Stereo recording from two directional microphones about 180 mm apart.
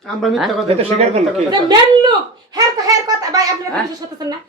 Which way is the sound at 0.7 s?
35° right (ahead or behind).